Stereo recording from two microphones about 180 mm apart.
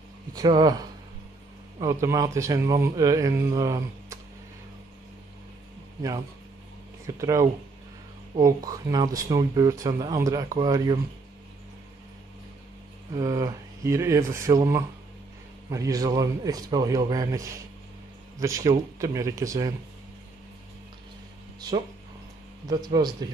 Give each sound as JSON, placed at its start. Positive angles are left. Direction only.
{"t": 0.3, "sound": "speech", "side_deg": -20}
{"t": 7.1, "sound": "speech", "side_deg": -15}
{"t": 13.1, "sound": "speech", "side_deg": -20}
{"t": 21.5, "sound": "speech", "side_deg": -20}